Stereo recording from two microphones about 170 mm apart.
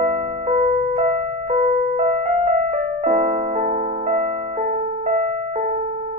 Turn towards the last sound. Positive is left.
turn(degrees=-45)  # may be behind; listen again after turning